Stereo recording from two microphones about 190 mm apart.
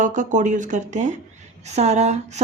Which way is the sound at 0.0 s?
40° right (ahead or behind).